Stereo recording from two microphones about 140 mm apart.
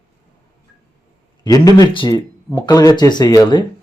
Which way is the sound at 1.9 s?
35° left (ahead or behind).